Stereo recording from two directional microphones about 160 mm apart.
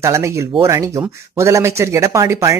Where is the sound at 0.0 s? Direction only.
20° right (ahead or behind).